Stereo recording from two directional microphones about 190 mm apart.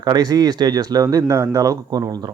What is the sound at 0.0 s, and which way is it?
Speech, 20° right (ahead or behind).